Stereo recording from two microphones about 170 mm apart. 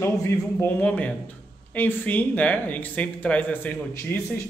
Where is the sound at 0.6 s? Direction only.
10° left (ahead or behind).